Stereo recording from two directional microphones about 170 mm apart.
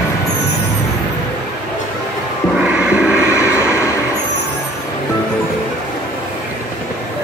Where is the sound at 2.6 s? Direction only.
10° right (ahead or behind).